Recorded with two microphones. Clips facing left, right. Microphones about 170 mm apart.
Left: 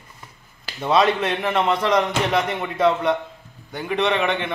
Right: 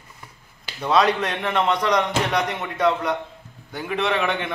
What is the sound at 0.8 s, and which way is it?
A man's voice, centre (ahead or behind).